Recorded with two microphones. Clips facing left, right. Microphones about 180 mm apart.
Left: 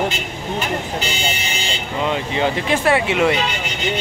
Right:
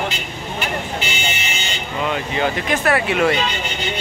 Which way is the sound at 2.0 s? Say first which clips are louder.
Left 1 dB; 25° left (ahead or behind).